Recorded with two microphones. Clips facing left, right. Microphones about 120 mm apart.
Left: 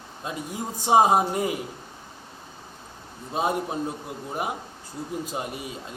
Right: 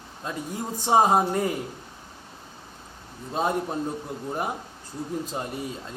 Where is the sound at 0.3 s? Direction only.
15° left (ahead or behind).